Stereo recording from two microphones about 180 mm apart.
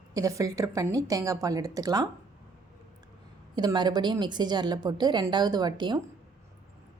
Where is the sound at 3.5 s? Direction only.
25° right (ahead or behind).